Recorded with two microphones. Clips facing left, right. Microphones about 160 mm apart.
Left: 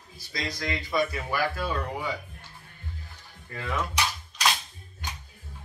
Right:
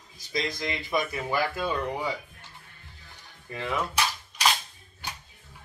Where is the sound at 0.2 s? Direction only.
20° right (ahead or behind).